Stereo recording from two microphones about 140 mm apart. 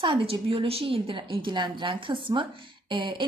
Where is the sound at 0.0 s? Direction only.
40° right (ahead or behind).